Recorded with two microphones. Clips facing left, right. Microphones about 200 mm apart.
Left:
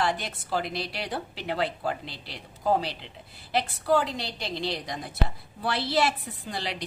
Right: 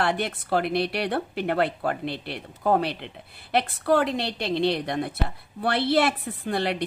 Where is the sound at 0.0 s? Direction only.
60° right (ahead or behind).